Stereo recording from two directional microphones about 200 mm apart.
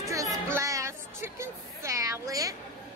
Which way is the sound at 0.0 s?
15° right (ahead or behind).